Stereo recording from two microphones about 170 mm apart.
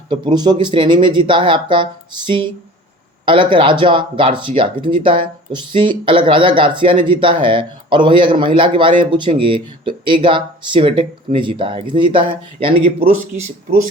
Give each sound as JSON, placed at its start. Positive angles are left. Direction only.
{"t": 0.1, "sound": "speech", "side_deg": -25}